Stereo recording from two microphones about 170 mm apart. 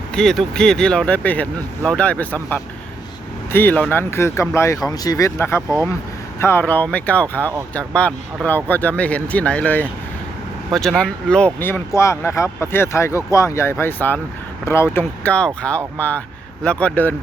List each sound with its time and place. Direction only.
0.1 s speech: 5° left (ahead or behind)